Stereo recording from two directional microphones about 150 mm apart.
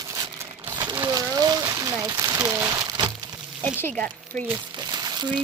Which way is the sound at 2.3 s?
20° right (ahead or behind).